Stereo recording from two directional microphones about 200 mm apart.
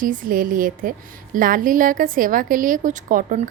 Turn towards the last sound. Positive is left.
turn(degrees=-40)  # may be behind; listen again after turning